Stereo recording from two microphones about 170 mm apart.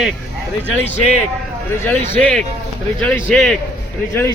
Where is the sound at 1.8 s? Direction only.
10° left (ahead or behind).